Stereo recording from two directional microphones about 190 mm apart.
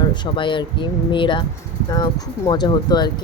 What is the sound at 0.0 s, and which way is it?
Speech, 25° left (ahead or behind).